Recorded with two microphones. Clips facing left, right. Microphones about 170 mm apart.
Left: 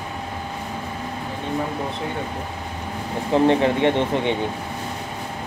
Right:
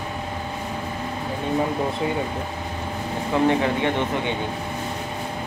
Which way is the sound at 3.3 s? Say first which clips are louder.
Left 3 dB; 30° left (ahead or behind).